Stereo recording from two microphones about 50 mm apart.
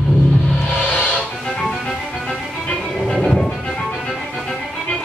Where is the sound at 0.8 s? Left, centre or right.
Left.